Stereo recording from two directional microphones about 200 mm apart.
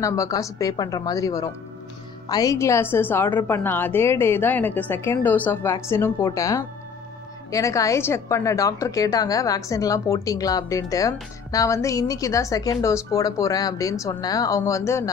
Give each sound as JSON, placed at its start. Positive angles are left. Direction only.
{"t": 0.0, "sound": "a woman's voice", "side_deg": 15}